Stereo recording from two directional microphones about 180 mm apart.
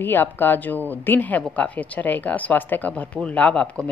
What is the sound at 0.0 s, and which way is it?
Speech, 10° left (ahead or behind).